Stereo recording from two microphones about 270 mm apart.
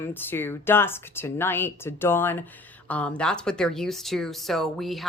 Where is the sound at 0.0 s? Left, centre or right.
Centre.